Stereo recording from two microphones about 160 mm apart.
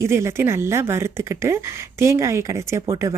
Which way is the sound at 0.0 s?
15° right (ahead or behind).